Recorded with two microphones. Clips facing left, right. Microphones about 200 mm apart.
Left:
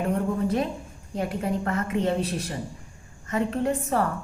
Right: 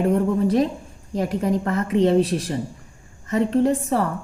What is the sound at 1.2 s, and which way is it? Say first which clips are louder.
A woman's voice: right 5 dB; 40° right (ahead or behind).